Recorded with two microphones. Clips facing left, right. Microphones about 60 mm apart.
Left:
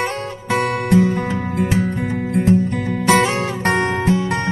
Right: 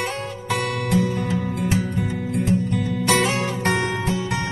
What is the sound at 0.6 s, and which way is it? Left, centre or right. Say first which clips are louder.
Music: left 7 dB; left.